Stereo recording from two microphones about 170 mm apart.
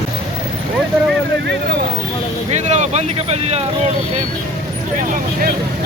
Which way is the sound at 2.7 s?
40° right (ahead or behind).